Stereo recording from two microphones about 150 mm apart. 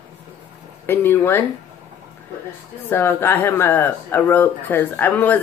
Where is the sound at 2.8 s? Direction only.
15° left (ahead or behind).